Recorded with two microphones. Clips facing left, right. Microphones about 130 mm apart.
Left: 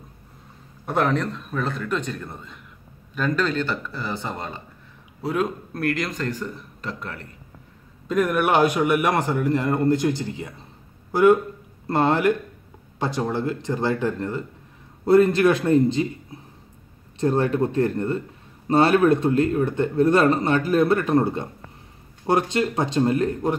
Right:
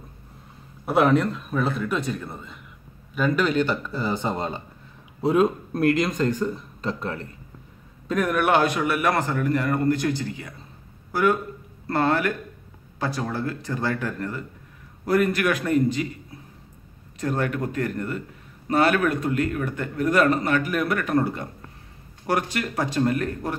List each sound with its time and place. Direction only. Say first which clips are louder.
0.8 s a man's voice: right 3 dB; 5° right (ahead or behind); by 7.2 s 25° right (ahead or behind)
8.1 s a man's voice: left 1 dB; centre (ahead or behind); by 23.6 s 20° left (ahead or behind)